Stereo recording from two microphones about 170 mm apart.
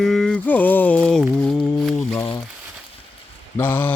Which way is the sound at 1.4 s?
5° left (ahead or behind).